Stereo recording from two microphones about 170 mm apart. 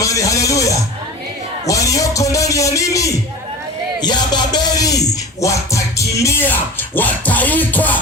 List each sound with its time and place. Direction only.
0.0 s speech: 20° left (ahead or behind)
1.6 s music: 20° left (ahead or behind)